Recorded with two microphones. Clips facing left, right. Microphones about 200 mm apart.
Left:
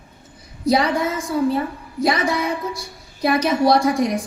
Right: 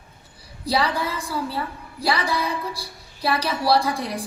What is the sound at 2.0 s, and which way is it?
A woman's voice, 30° right (ahead or behind).